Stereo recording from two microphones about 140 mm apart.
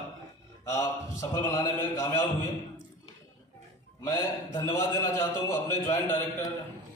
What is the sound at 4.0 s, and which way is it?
A man's voice, 25° left (ahead or behind).